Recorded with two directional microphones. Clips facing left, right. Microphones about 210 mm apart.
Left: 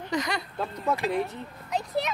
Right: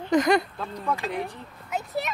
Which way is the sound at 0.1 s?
50° right (ahead or behind).